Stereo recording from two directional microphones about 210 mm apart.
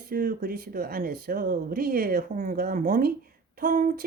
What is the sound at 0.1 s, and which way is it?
Speech, 40° right (ahead or behind).